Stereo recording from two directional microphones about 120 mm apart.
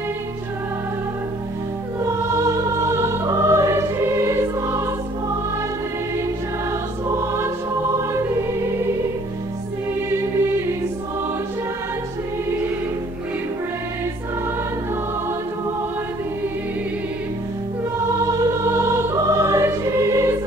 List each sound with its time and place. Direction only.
2.0 s music: 25° right (ahead or behind)
7.1 s music: 25° right (ahead or behind)
18.3 s music: 25° right (ahead or behind)